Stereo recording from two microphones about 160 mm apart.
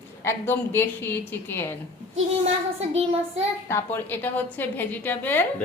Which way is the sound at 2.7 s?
40° right (ahead or behind).